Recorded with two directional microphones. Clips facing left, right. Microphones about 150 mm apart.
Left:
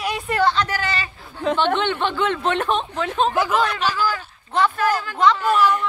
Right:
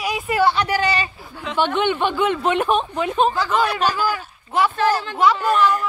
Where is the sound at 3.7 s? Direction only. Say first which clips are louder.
Right 2 dB; 40° right (ahead or behind).